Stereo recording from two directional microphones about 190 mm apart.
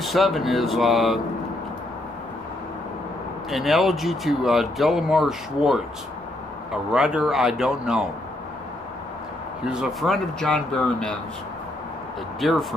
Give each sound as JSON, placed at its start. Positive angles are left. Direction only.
{"t": 0.0, "sound": "speech", "side_deg": 0}
{"t": 3.4, "sound": "speech", "side_deg": 0}
{"t": 9.7, "sound": "speech", "side_deg": 0}
{"t": 12.4, "sound": "speech", "side_deg": 0}